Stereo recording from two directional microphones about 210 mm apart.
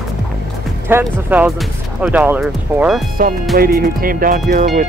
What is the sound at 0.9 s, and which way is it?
Speech, 10° right (ahead or behind).